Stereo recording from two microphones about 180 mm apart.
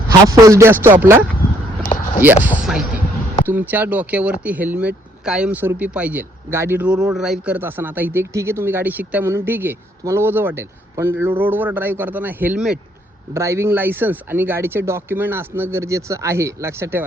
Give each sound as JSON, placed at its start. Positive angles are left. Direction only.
{"t": 0.3, "sound": "a man's voice", "side_deg": -20}
{"t": 1.9, "sound": "a sound", "side_deg": 25}
{"t": 2.2, "sound": "a man's voice", "side_deg": -10}
{"t": 13.3, "sound": "a man's voice", "side_deg": -15}